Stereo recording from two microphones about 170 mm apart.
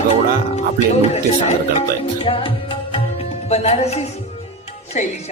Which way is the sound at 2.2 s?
30° left (ahead or behind).